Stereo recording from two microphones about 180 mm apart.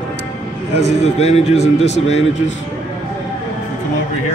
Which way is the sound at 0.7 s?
35° left (ahead or behind).